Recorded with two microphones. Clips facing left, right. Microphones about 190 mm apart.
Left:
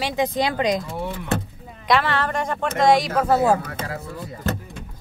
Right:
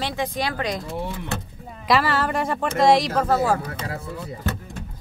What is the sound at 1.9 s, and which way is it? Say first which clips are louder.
Speech: even; centre (ahead or behind).